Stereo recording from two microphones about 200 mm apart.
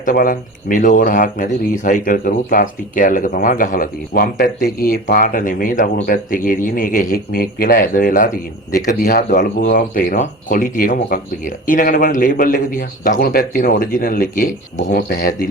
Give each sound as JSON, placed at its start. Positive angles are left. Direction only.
{"t": 0.0, "sound": "speech", "side_deg": 45}